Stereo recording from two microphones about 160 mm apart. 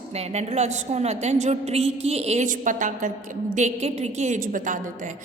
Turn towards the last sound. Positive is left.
turn(degrees=-55)  # may be behind; listen again after turning